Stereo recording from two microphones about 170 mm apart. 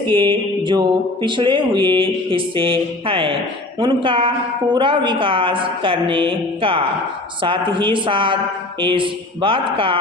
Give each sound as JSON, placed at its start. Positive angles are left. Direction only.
{"t": 0.1, "sound": "mantra", "side_deg": -30}
{"t": 3.8, "sound": "speech", "side_deg": -30}
{"t": 4.7, "sound": "mantra", "side_deg": -30}